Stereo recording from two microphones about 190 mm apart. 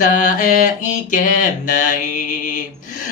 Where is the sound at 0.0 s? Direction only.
45° left (ahead or behind).